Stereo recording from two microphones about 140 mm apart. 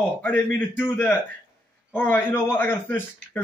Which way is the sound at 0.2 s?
10° left (ahead or behind).